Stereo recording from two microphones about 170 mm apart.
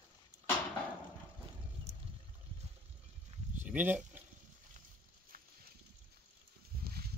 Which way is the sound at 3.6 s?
10° right (ahead or behind).